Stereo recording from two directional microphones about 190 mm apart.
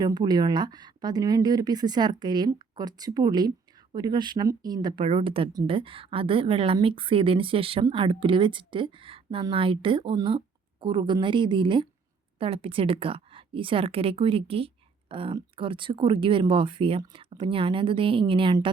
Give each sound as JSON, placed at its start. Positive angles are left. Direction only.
{"t": 0.0, "sound": "a woman's voice", "side_deg": -20}